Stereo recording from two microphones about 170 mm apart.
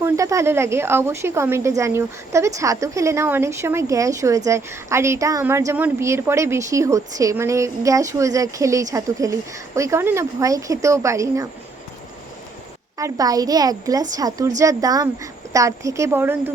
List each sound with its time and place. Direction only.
0.0 s a woman's voice: 20° right (ahead or behind)
13.0 s a woman's voice: 20° right (ahead or behind)